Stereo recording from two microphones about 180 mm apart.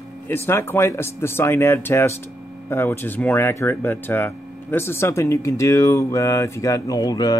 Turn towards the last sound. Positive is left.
turn(degrees=20)  # may be behind; listen again after turning